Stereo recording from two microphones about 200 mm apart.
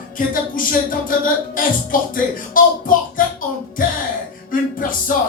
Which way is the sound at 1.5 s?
45° left (ahead or behind).